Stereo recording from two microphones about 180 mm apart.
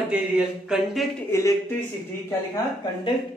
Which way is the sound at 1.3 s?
15° left (ahead or behind).